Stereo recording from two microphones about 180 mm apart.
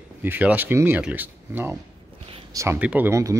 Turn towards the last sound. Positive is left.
turn(degrees=-15)  # may be behind; listen again after turning